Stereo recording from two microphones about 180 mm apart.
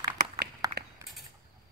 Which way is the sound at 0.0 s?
60° right (ahead or behind).